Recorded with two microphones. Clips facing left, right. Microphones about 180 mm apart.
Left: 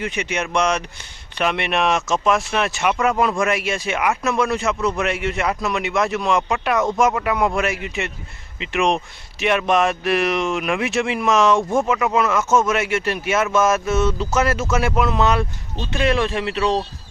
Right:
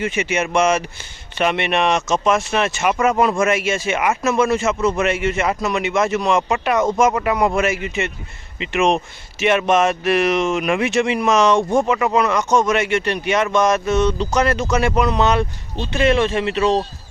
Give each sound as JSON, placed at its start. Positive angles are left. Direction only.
{"t": 0.0, "sound": "speech", "side_deg": -5}